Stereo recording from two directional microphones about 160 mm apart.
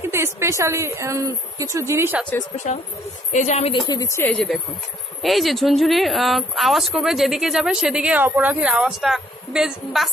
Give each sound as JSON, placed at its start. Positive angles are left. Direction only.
{"t": 0.0, "sound": "a woman's voice", "side_deg": -15}
{"t": 3.3, "sound": "a woman's voice", "side_deg": 45}
{"t": 3.8, "sound": "speech", "side_deg": 20}
{"t": 5.2, "sound": "speech", "side_deg": 0}